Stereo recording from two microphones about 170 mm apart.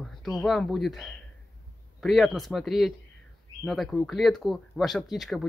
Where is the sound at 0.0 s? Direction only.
Centre (ahead or behind).